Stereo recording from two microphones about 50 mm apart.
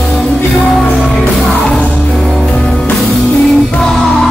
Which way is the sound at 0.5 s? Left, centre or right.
Centre.